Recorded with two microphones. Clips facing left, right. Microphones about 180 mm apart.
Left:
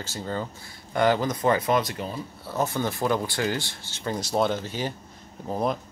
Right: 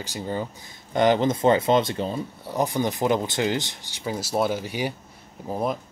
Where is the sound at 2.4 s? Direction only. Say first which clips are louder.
Right 2 dB; 15° right (ahead or behind).